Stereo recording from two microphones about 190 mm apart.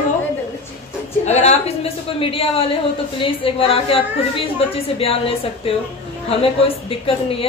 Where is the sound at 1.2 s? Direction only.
35° left (ahead or behind).